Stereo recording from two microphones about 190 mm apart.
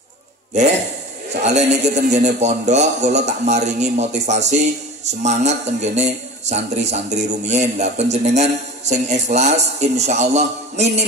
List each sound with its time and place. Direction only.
1.3 s a man's voice: 35° right (ahead or behind)